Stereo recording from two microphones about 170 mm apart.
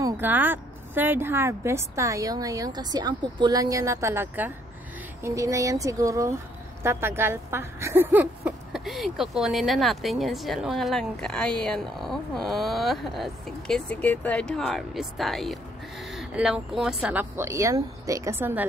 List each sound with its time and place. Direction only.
0.0 s a woman's voice: 10° right (ahead or behind)